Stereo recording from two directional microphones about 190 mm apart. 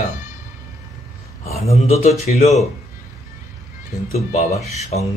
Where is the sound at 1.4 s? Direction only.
35° left (ahead or behind).